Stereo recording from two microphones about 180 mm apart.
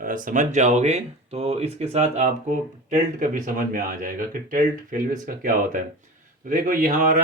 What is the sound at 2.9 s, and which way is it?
Speech, 50° right (ahead or behind).